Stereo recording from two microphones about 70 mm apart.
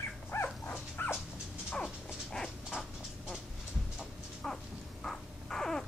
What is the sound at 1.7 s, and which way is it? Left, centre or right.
Dog, centre.